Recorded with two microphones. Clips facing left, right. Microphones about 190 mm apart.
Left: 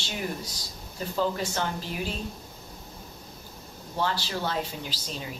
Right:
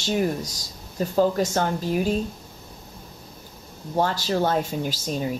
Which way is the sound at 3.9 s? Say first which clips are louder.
Right 7 dB; 45° right (ahead or behind).